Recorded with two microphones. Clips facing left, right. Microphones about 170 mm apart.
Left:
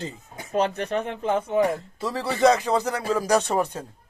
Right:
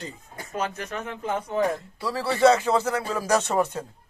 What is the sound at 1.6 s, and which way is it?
Speech, 20° left (ahead or behind).